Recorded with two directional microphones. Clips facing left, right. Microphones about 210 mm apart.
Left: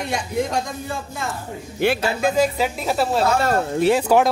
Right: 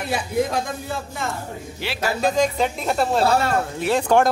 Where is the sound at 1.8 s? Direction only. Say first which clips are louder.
Left 12 dB; 55° left (ahead or behind).